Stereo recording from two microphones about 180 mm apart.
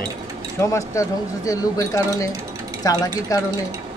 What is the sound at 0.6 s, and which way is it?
Speech, 15° left (ahead or behind).